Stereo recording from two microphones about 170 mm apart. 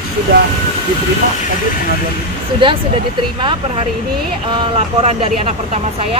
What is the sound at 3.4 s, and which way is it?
Speech, 30° right (ahead or behind).